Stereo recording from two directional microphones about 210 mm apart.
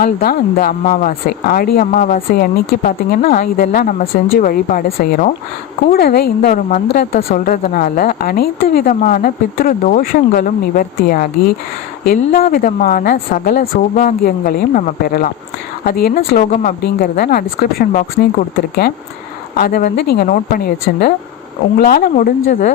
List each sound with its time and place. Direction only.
0.0 s a woman's voice: 45° left (ahead or behind)
6.8 s a woman's voice: 50° left (ahead or behind)
19.5 s a woman's voice: 45° left (ahead or behind)